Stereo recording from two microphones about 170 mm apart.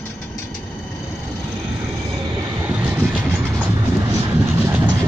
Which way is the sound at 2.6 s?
10° right (ahead or behind).